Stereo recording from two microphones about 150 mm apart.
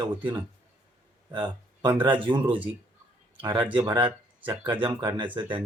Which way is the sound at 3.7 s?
30° right (ahead or behind).